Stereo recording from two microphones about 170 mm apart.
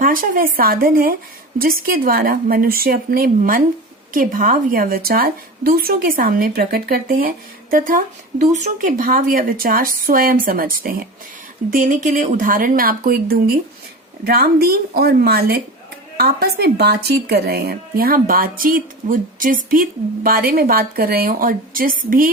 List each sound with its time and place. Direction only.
0.0 s speech: 55° right (ahead or behind)